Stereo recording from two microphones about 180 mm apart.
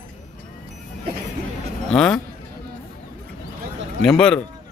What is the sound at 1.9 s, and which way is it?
Speech, 5° left (ahead or behind).